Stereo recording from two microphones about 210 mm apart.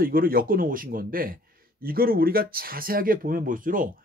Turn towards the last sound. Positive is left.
turn(degrees=-40)  # may be behind; listen again after turning